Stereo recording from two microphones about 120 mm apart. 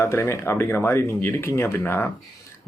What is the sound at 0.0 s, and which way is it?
Speech, 20° left (ahead or behind).